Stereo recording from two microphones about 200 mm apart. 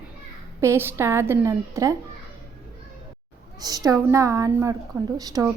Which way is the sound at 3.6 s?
20° right (ahead or behind).